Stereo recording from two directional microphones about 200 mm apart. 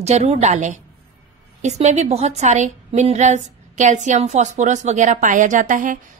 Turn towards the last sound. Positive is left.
turn(degrees=-40)  # may be behind; listen again after turning